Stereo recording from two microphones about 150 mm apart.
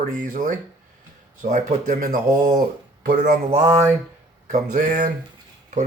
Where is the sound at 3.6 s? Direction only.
20° right (ahead or behind).